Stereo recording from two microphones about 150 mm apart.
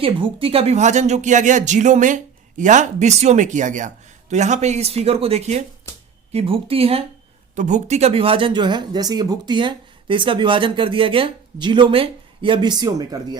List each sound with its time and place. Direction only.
0.0 s speech: 35° right (ahead or behind)
7.5 s speech: 55° right (ahead or behind); by 13.4 s 25° right (ahead or behind)